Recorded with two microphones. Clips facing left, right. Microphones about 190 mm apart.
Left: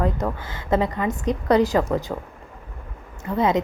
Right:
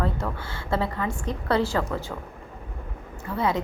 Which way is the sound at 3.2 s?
20° left (ahead or behind).